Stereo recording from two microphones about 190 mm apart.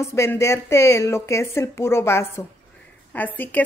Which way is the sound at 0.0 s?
15° left (ahead or behind).